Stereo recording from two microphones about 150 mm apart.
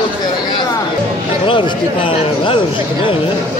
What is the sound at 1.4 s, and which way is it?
A man's voice, 35° left (ahead or behind).